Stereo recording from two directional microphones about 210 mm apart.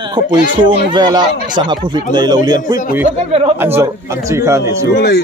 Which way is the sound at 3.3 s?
25° right (ahead or behind).